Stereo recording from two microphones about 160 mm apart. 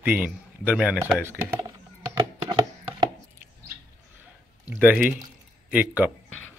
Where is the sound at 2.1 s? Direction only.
25° right (ahead or behind).